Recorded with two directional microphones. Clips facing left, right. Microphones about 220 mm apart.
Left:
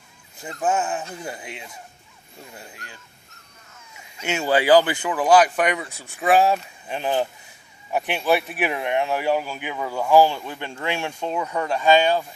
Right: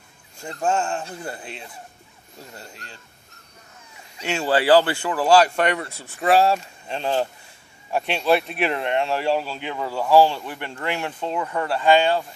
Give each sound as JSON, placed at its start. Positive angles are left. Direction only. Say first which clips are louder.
{"t": 0.4, "sound": "speech", "louder": "even", "side_deg": 5}
{"t": 4.4, "sound": "speech", "louder": "even", "side_deg": 10}